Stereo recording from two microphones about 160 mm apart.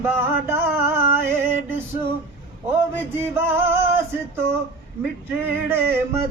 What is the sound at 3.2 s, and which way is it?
Music, 15° right (ahead or behind).